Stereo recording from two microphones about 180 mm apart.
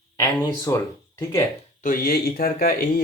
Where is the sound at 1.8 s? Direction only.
55° left (ahead or behind).